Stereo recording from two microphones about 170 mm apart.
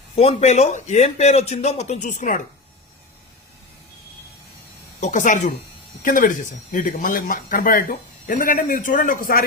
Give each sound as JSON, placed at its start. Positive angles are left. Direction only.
{"t": 0.2, "sound": "a man's voice", "side_deg": 35}
{"t": 4.9, "sound": "speech", "side_deg": 45}